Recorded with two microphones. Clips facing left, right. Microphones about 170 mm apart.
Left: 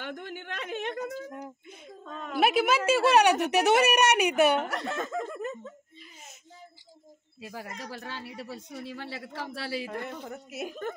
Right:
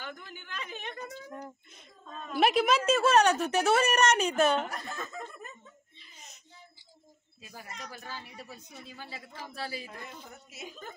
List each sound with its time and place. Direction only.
0.0 s speech: 75° left (ahead or behind)
1.0 s speech: 55° left (ahead or behind); by 2.4 s 70° left (ahead or behind)
2.4 s a woman's voice: 5° left (ahead or behind)
3.3 s speech: 75° left (ahead or behind)
3.9 s a woman's voice: 15° left (ahead or behind)
4.6 s speech: 75° left (ahead or behind)
5.3 s a sound: 80° left
7.4 s speech: 55° left (ahead or behind)
7.9 s speech: 80° left; by 10.9 s 60° left (ahead or behind)